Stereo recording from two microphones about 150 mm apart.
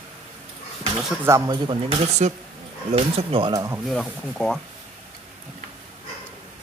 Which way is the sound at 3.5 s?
20° right (ahead or behind).